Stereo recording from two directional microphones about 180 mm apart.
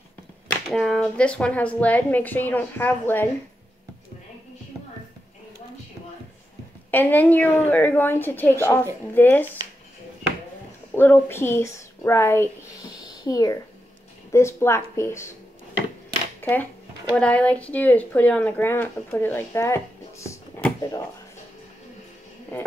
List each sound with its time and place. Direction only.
0.5 s speech: centre (ahead or behind)
6.9 s speech: 10° left (ahead or behind)
11.0 s speech: 10° left (ahead or behind)
16.3 s a sound: 10° left (ahead or behind)
17.1 s speech: 5° left (ahead or behind)